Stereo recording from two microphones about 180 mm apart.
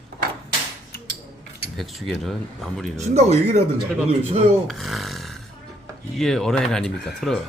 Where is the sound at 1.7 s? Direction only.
Centre (ahead or behind).